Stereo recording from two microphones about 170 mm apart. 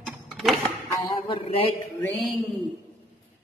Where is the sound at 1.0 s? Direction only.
30° left (ahead or behind).